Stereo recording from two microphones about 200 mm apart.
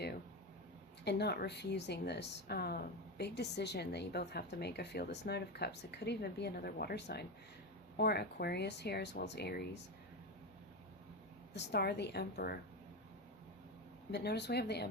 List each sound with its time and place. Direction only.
1.0 s a woman's voice: 55° left (ahead or behind)
11.5 s speech: 55° left (ahead or behind)
14.1 s a woman's voice: 55° left (ahead or behind)